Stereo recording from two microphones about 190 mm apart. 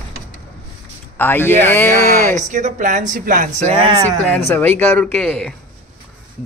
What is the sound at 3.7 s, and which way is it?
Speech, 30° right (ahead or behind).